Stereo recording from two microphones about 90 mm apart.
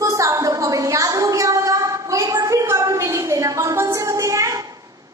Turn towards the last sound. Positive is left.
turn(degrees=-35)  # may be behind; listen again after turning